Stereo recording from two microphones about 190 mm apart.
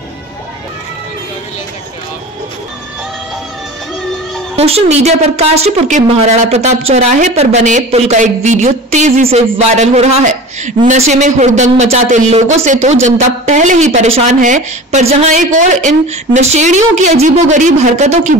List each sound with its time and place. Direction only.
4.6 s speech: 30° right (ahead or behind)